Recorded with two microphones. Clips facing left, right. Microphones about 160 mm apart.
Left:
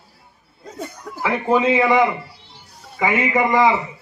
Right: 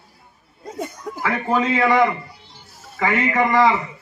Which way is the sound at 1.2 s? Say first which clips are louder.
Left 3 dB; 15° left (ahead or behind).